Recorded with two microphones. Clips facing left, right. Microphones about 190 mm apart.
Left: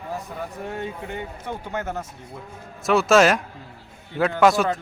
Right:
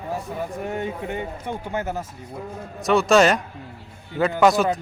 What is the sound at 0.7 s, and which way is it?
A man's voice, 15° right (ahead or behind).